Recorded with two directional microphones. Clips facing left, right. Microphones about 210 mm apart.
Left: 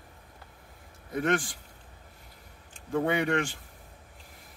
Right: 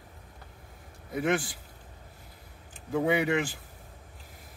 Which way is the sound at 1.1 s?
5° right (ahead or behind).